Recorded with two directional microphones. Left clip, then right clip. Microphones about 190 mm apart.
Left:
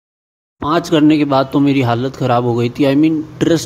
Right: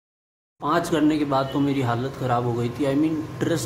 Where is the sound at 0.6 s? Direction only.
35° left (ahead or behind).